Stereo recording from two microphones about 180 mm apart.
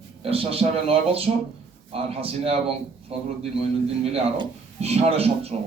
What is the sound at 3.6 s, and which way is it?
A man's voice, 35° right (ahead or behind).